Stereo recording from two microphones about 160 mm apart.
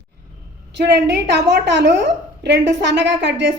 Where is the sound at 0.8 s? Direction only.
90° right.